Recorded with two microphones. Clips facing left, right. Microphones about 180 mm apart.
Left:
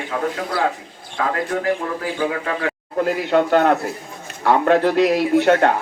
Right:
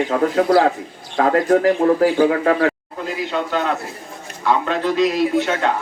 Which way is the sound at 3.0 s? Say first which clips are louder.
Left 7 dB; 60° left (ahead or behind).